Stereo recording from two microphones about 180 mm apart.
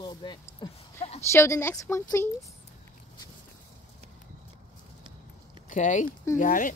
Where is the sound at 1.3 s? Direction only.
15° left (ahead or behind).